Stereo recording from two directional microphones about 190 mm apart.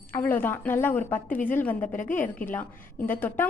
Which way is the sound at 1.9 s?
45° left (ahead or behind).